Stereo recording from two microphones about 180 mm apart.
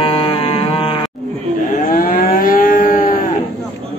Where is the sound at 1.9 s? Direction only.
50° left (ahead or behind).